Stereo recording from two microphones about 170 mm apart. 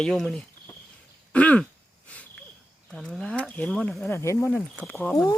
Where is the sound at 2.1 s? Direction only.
10° left (ahead or behind).